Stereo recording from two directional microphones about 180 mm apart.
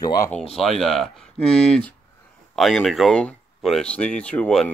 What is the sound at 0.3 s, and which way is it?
Speech, 5° left (ahead or behind).